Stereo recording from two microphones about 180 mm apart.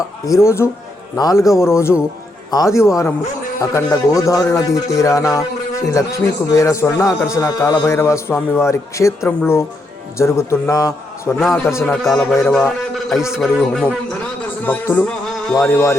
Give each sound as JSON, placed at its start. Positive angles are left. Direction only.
{"t": 0.3, "sound": "a man's voice", "side_deg": 15}
{"t": 11.3, "sound": "a man's voice", "side_deg": 0}
{"t": 11.7, "sound": "a man's voice", "side_deg": 15}